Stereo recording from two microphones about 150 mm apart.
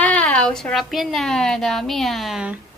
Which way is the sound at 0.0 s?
10° left (ahead or behind).